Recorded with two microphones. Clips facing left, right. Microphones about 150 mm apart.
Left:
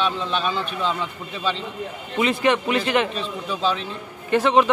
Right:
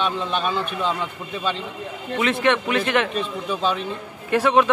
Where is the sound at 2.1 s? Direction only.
Centre (ahead or behind).